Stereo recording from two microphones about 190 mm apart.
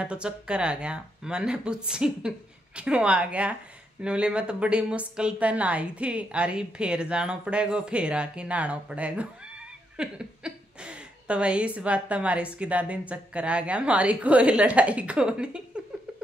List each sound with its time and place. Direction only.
0.0 s a woman's voice: 5° right (ahead or behind)